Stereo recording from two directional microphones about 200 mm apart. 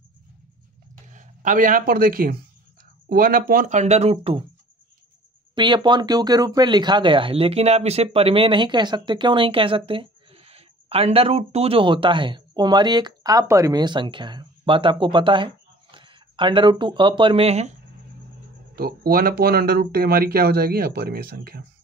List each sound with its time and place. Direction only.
1.1 s a man's voice: 40° right (ahead or behind)
5.5 s speech: 25° right (ahead or behind)
18.8 s speech: 50° right (ahead or behind)